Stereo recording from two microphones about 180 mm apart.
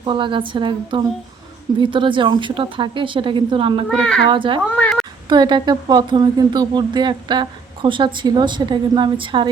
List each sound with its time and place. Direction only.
0.0 s speech: 25° right (ahead or behind)
3.8 s speech: 5° left (ahead or behind)
4.3 s speech: 30° right (ahead or behind)
4.7 s a sound: 5° left (ahead or behind)
5.3 s speech: 25° right (ahead or behind)